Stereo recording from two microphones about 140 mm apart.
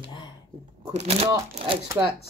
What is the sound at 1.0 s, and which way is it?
Speech, 50° right (ahead or behind).